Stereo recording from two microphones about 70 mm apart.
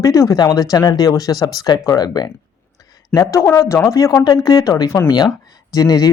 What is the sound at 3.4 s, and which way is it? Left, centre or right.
Speech, left.